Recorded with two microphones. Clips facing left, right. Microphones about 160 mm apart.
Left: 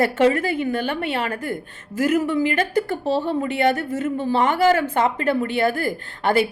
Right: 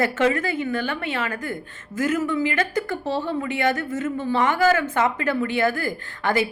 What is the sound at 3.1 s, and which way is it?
A woman's voice, 35° left (ahead or behind).